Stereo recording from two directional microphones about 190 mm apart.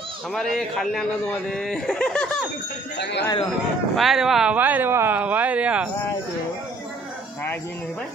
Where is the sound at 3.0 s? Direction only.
65° left (ahead or behind).